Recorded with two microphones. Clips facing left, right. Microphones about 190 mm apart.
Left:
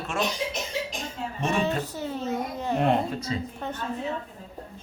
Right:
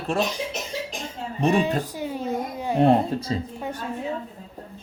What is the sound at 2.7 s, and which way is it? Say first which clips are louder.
Speech: right 6 dB; 30° right (ahead or behind).